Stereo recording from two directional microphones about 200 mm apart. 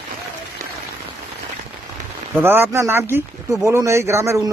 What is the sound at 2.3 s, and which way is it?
Speech, 10° right (ahead or behind).